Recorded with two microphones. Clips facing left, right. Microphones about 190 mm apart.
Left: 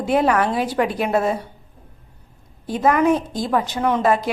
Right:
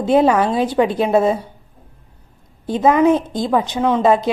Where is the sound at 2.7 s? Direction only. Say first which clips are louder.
Right 4 dB; 25° right (ahead or behind).